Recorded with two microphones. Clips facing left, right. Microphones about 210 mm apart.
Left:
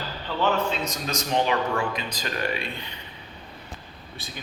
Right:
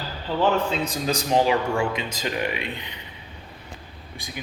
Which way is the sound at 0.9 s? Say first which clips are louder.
Right 4 dB; 30° right (ahead or behind).